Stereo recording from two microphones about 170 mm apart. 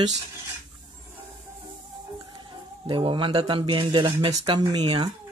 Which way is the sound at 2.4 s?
30° right (ahead or behind).